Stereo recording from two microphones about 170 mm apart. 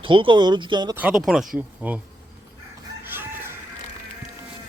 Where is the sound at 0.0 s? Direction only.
30° right (ahead or behind).